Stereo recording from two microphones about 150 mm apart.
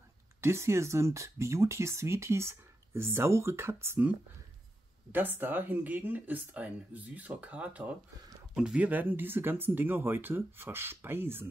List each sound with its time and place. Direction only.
0.4 s speech: 15° right (ahead or behind)
5.1 s speech: 15° right (ahead or behind)